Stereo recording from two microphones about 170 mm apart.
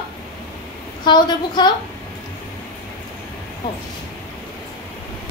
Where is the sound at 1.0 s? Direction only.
25° left (ahead or behind).